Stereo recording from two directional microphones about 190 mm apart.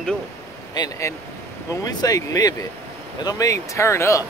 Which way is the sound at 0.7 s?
20° left (ahead or behind).